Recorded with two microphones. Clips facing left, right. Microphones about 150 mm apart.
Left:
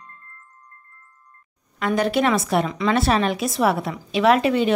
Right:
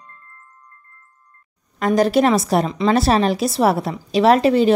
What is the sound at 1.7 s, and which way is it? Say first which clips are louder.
A woman's voice: right 5 dB; 40° right (ahead or behind).